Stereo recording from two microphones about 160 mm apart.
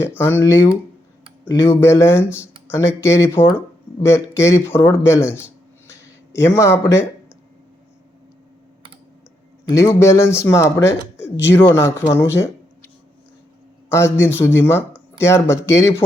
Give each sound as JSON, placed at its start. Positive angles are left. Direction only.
{"t": 0.0, "sound": "speech", "side_deg": 15}
{"t": 9.6, "sound": "speech", "side_deg": 15}
{"t": 13.9, "sound": "speech", "side_deg": 15}